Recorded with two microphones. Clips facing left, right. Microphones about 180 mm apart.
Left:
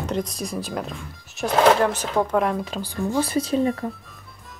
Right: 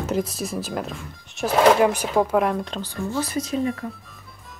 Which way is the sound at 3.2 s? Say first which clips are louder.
Left 3 dB; 30° left (ahead or behind).